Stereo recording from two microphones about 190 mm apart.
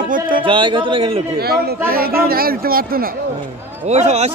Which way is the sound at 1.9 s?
50° right (ahead or behind).